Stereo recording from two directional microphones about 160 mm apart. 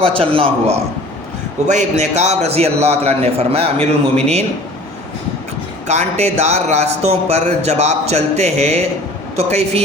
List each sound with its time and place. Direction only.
0.0 s a man's voice: 35° right (ahead or behind)
1.6 s a man's voice: 45° right (ahead or behind)
5.9 s a man's voice: 45° right (ahead or behind)